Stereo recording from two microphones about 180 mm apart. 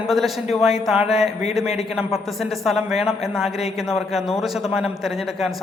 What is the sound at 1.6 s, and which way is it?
Speech, 35° left (ahead or behind).